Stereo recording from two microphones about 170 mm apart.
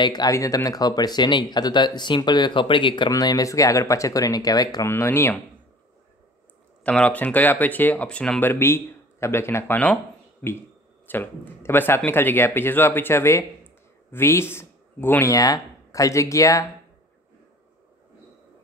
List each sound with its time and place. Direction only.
0.0 s speech: 25° left (ahead or behind)
6.8 s speech: 5° left (ahead or behind)
11.1 s speech: 10° left (ahead or behind)